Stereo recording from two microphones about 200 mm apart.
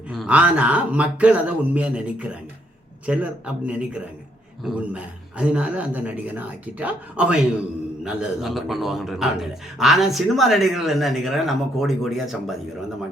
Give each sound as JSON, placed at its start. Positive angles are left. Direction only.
{"t": 0.1, "sound": "a man's voice", "side_deg": -5}